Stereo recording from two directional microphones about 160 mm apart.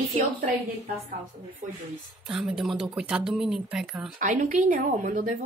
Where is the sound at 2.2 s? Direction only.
Centre (ahead or behind).